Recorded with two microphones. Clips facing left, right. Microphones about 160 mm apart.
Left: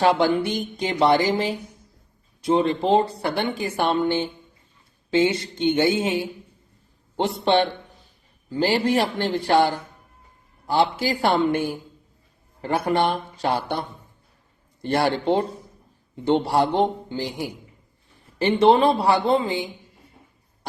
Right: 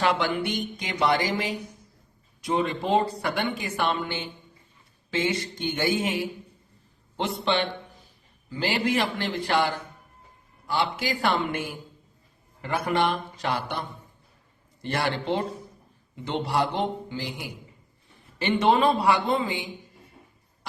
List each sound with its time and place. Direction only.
0.0 s a woman's voice: 35° left (ahead or behind)
7.2 s a woman's voice: 40° left (ahead or behind)
14.8 s a woman's voice: 35° left (ahead or behind)